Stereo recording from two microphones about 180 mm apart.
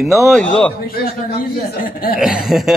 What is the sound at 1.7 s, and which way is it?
Speech, 55° left (ahead or behind).